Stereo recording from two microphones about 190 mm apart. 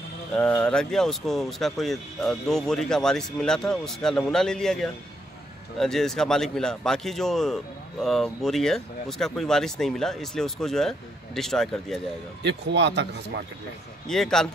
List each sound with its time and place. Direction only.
0.4 s a man's voice: 5° left (ahead or behind)
12.4 s speech: 65° right (ahead or behind)
14.0 s a man's voice: centre (ahead or behind)